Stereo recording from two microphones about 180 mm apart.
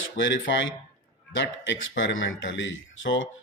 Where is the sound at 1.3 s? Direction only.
85° left.